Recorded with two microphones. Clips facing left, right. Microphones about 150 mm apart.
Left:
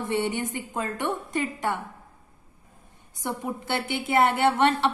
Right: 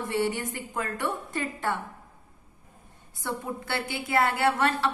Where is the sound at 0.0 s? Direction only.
20° left (ahead or behind).